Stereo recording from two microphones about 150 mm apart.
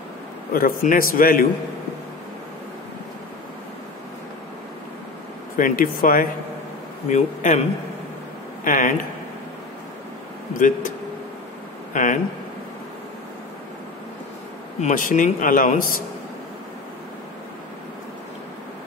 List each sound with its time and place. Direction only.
0.5 s a man's voice: 75° left (ahead or behind)
5.6 s a man's voice: 70° left (ahead or behind)
7.1 s speech: 55° left (ahead or behind)
8.6 s speech: 65° left (ahead or behind)
11.9 s speech: 60° left (ahead or behind)
14.8 s speech: 60° left (ahead or behind)